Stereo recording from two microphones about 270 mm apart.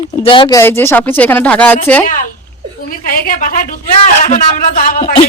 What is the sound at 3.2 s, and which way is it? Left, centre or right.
A woman's voice, left.